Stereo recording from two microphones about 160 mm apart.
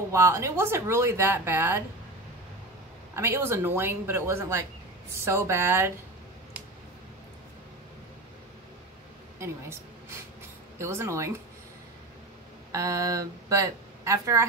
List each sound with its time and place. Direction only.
0.1 s speech: 15° right (ahead or behind)
3.2 s speech: 15° right (ahead or behind)
9.4 s a woman's voice: 15° right (ahead or behind)
12.7 s speech: 20° right (ahead or behind)